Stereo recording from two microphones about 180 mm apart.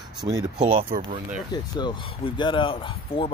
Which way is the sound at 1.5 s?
25° left (ahead or behind).